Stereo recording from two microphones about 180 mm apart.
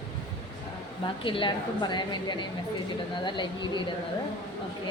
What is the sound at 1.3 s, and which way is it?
Speech, 25° left (ahead or behind).